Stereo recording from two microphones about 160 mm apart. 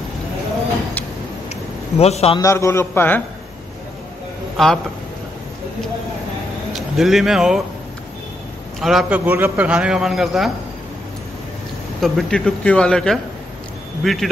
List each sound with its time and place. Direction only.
1.5 s a sound: 40° left (ahead or behind)
2.3 s a man's voice: 20° left (ahead or behind)
4.6 s a man's voice: centre (ahead or behind)
6.7 s speech: centre (ahead or behind)
8.8 s a man's voice: 5° right (ahead or behind)
12.0 s a man's voice: centre (ahead or behind)